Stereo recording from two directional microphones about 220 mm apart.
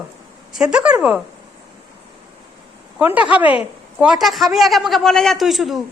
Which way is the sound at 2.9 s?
5° right (ahead or behind).